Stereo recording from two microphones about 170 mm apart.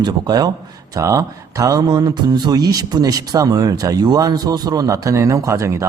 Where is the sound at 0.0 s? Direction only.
25° right (ahead or behind).